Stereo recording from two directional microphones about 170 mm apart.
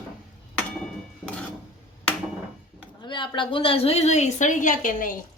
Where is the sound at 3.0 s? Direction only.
25° left (ahead or behind); by 5.2 s 50° left (ahead or behind).